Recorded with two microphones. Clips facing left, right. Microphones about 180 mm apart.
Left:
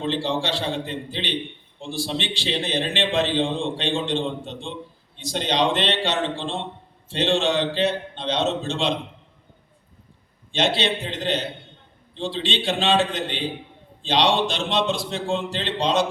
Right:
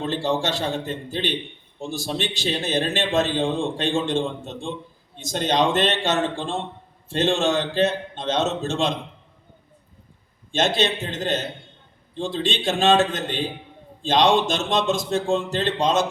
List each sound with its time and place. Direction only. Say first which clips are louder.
0.0 s a man's voice: right 1 dB; 45° right (ahead or behind)
10.5 s a man's voice: right 1 dB; 45° right (ahead or behind)